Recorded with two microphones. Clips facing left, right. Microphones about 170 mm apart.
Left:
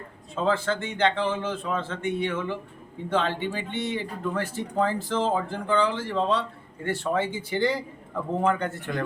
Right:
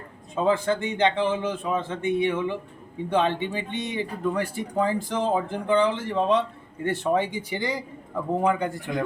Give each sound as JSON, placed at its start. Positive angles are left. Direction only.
{"t": 0.3, "sound": "speech", "side_deg": -15}